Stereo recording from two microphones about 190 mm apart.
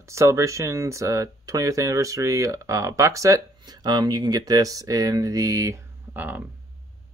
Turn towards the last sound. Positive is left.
turn(degrees=-10)  # may be behind; listen again after turning